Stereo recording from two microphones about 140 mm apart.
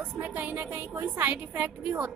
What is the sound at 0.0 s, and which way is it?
Speech, 10° right (ahead or behind).